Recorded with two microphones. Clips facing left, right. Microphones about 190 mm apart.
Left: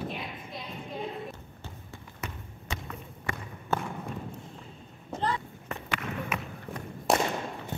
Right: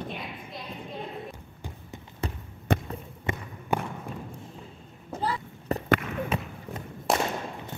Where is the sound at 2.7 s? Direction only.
55° right (ahead or behind).